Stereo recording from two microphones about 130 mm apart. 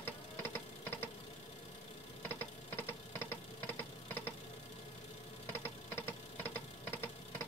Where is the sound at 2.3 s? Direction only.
20° left (ahead or behind).